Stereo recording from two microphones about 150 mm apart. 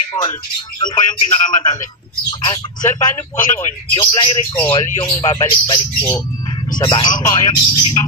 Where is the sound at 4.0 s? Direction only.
35° left (ahead or behind).